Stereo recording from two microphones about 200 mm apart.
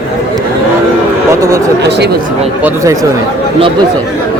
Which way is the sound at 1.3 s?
15° right (ahead or behind).